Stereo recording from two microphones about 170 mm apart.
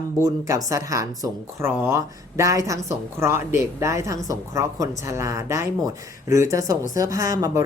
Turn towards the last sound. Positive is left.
turn(degrees=-20)  # may be behind; listen again after turning